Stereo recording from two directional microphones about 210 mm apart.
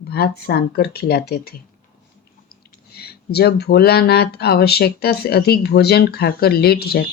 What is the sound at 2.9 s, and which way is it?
Speech, 50° left (ahead or behind).